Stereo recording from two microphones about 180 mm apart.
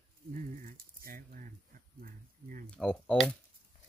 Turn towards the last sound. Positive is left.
turn(degrees=5)  # may be behind; listen again after turning